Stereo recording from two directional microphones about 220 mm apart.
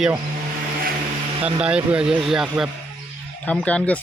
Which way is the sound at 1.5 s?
5° right (ahead or behind).